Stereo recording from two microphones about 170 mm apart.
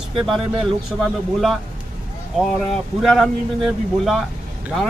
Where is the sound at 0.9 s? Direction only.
Centre (ahead or behind).